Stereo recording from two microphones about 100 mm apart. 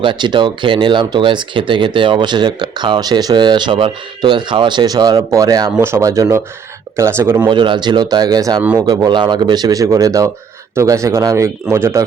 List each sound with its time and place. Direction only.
0.0 s speech: 50° right (ahead or behind); by 7.4 s 25° right (ahead or behind)
7.4 s speech: 50° right (ahead or behind); by 12.0 s 25° right (ahead or behind)